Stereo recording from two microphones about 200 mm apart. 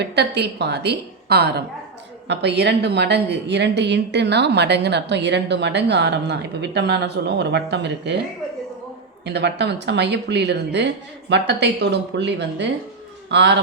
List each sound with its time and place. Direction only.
0.0 s a woman's voice: 55° right (ahead or behind)
9.2 s a woman's voice: 60° right (ahead or behind)